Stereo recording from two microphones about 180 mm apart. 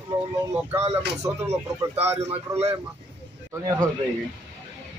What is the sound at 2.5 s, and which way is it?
Speech, 20° right (ahead or behind).